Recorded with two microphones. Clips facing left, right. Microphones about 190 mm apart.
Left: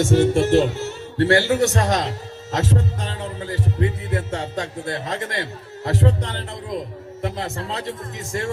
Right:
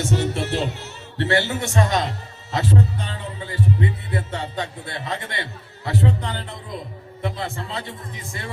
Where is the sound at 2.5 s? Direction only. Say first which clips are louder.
Right 1 dB; 45° left (ahead or behind).